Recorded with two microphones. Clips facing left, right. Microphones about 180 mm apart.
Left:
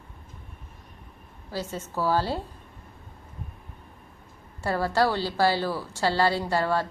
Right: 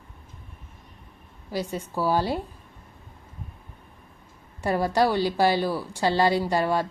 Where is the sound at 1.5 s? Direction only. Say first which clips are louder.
Right 3 dB; 15° right (ahead or behind).